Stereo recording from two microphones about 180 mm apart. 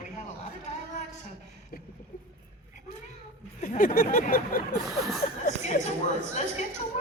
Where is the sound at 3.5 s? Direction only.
45° left (ahead or behind).